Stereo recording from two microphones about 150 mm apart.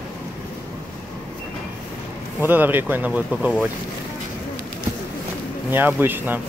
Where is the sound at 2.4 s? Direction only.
10° right (ahead or behind).